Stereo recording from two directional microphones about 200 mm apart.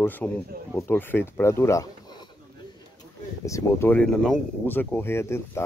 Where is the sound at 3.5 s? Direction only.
15° left (ahead or behind).